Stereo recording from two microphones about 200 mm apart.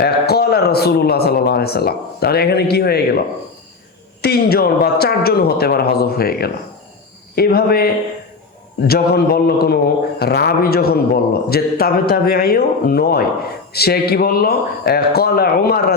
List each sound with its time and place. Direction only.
0.0 s a man's voice: 50° left (ahead or behind)